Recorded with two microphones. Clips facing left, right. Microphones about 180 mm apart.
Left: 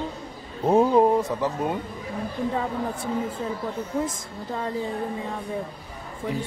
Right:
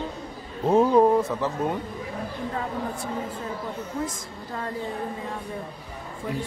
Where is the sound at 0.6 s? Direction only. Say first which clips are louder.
Even; 15° left (ahead or behind).